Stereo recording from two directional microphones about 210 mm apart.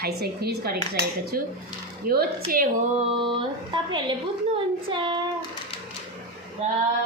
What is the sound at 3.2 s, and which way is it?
Speech, 20° right (ahead or behind).